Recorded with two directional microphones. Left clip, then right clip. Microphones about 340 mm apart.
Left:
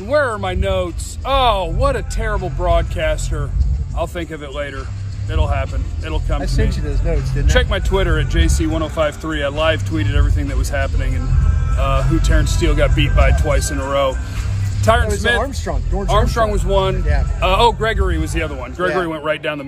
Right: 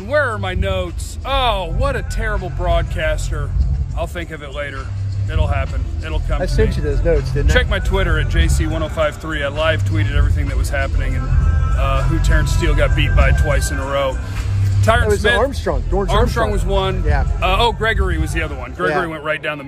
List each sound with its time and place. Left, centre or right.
0.1 s speech: centre
6.4 s speech: centre
7.4 s speech: centre
15.4 s speech: centre
16.1 s speech: centre